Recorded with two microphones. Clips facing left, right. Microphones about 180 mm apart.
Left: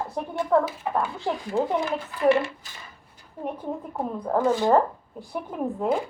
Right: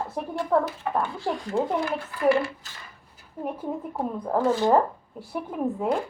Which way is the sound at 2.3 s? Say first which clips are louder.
Left 1 dB; 20° left (ahead or behind).